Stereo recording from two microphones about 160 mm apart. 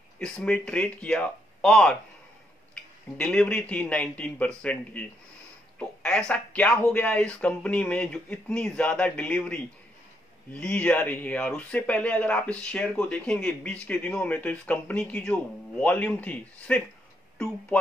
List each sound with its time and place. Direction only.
0.2 s a man's voice: 5° left (ahead or behind)